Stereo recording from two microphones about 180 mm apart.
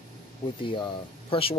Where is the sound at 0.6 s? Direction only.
30° left (ahead or behind).